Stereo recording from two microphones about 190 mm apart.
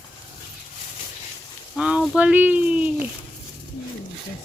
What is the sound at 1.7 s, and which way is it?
Speech, 5° right (ahead or behind).